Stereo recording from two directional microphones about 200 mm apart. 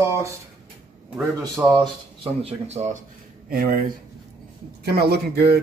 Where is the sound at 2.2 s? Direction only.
30° right (ahead or behind).